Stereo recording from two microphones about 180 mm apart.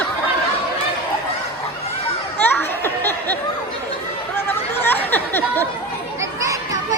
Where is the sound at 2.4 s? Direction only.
10° left (ahead or behind).